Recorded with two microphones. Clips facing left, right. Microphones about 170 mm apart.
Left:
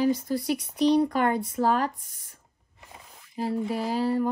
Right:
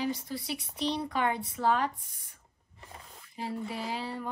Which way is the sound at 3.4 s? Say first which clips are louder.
Left 8 dB; 40° left (ahead or behind).